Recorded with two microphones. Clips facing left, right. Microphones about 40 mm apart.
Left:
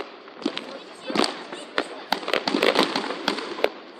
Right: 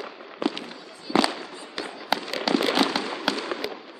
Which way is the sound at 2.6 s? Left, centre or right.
Left.